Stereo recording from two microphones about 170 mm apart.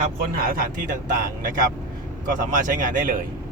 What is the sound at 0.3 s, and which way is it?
Speech, 60° right (ahead or behind).